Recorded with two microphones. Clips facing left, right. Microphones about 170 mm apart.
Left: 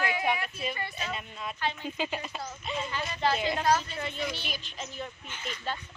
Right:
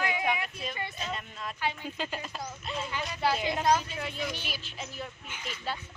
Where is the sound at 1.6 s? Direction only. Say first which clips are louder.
Even; 10° right (ahead or behind).